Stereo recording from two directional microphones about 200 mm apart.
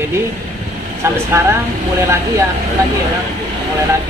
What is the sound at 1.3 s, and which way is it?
Speech, 15° right (ahead or behind).